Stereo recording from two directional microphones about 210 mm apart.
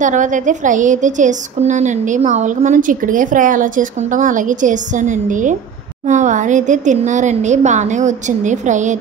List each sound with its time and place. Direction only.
0.0 s a woman's voice: 35° right (ahead or behind)